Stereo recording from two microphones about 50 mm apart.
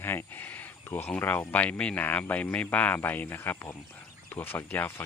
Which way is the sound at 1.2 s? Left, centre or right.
Left.